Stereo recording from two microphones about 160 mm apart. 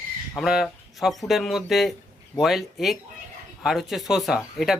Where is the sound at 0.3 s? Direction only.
Centre (ahead or behind).